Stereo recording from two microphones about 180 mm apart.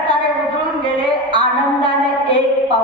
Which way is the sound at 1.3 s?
25° right (ahead or behind).